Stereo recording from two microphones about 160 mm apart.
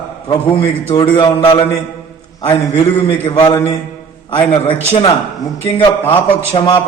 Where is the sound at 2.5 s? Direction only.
40° left (ahead or behind).